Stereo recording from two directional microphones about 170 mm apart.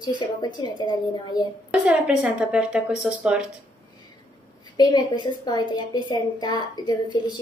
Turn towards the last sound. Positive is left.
turn(degrees=25)  # may be behind; listen again after turning